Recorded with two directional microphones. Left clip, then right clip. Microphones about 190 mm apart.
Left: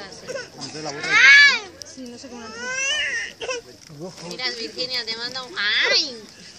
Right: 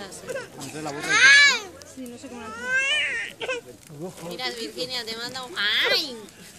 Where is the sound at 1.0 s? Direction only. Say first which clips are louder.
Left 3 dB; 55° right (ahead or behind).